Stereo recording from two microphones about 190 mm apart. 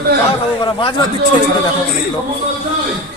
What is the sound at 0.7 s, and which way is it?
Speech, 25° left (ahead or behind).